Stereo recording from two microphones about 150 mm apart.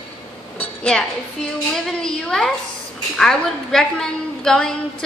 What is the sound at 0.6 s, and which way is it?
A woman's voice, 5° left (ahead or behind).